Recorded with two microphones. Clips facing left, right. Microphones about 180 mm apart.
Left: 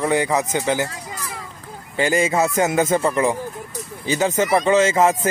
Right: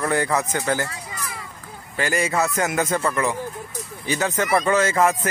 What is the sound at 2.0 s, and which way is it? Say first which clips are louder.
Speech: left 4 dB; 25° left (ahead or behind).